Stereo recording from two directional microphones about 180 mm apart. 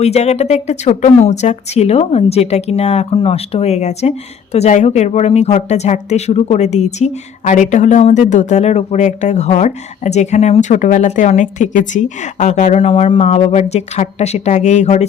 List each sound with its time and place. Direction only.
0.0 s speech: 35° left (ahead or behind)